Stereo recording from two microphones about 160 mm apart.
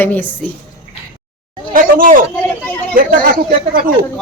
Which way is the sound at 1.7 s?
60° right (ahead or behind).